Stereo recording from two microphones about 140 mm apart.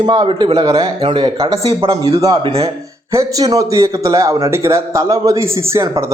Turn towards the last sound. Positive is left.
turn(degrees=-20)  # may be behind; listen again after turning